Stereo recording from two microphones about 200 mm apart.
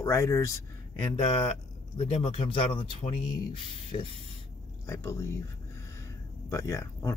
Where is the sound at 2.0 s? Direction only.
30° left (ahead or behind).